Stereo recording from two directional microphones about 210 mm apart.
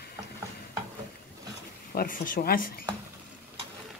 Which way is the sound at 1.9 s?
40° left (ahead or behind).